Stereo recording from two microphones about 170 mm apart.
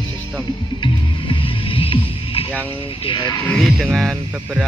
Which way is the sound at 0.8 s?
30° left (ahead or behind).